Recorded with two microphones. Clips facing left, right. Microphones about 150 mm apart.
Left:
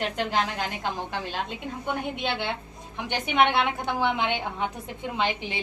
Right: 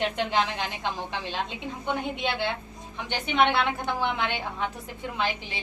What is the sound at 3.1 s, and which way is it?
A woman's voice, 15° left (ahead or behind).